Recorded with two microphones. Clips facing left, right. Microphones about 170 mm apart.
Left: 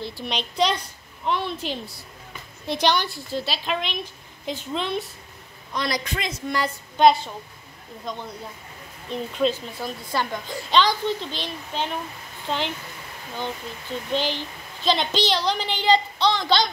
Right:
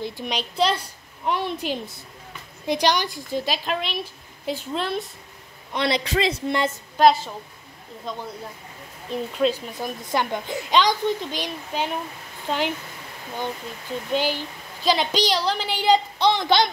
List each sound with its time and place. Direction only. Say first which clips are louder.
0.0 s a woman's voice: right 1 dB; 10° right (ahead or behind)
3.6 s a woman's voice: right 1 dB; 5° right (ahead or behind)
5.7 s a woman's voice: right 4 dB; 25° right (ahead or behind)
7.0 s a woman's voice: even; centre (ahead or behind)
9.8 s a woman's voice: right 2 dB; 15° right (ahead or behind)
14.1 s a woman's voice: right 2 dB; 10° right (ahead or behind)